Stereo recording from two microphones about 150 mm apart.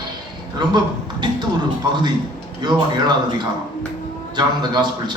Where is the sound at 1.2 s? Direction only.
30° right (ahead or behind).